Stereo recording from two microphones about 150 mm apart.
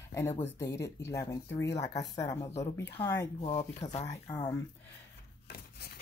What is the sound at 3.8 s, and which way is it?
Speech, 50° left (ahead or behind).